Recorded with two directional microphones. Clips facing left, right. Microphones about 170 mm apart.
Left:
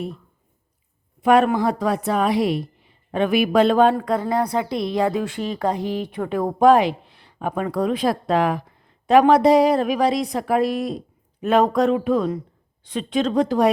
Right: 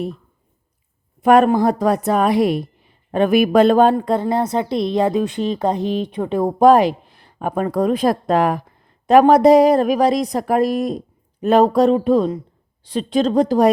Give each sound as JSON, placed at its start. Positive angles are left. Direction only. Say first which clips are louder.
{"t": 1.2, "sound": "speech", "louder": "right 4 dB", "side_deg": -45}
{"t": 3.9, "sound": "a woman's voice", "louder": "right 3 dB", "side_deg": -30}
{"t": 6.6, "sound": "a woman's voice", "louder": "right 3 dB", "side_deg": -40}